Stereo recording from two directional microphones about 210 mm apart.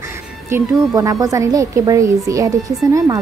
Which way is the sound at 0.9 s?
15° right (ahead or behind).